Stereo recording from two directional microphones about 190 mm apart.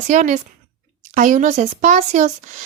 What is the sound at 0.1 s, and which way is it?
A woman's voice, 40° right (ahead or behind).